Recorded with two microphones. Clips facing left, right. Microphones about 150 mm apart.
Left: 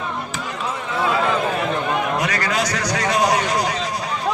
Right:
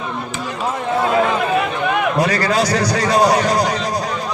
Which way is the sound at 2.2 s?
35° right (ahead or behind).